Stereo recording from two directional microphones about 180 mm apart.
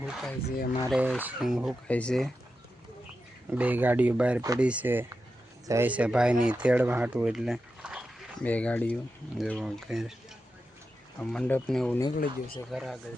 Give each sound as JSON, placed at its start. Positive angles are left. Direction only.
{"t": 0.0, "sound": "speech", "side_deg": 0}
{"t": 0.5, "sound": "speech", "side_deg": 55}
{"t": 0.9, "sound": "speech", "side_deg": -5}
{"t": 3.5, "sound": "speech", "side_deg": -10}
{"t": 8.4, "sound": "speech", "side_deg": 10}
{"t": 12.1, "sound": "speech", "side_deg": 55}
{"t": 12.7, "sound": "speech", "side_deg": 0}